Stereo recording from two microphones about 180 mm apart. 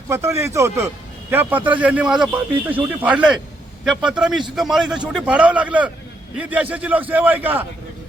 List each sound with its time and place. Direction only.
0.1 s a man's voice: 15° right (ahead or behind)